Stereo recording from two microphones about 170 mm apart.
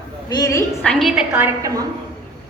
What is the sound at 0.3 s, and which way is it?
Speech, 20° left (ahead or behind).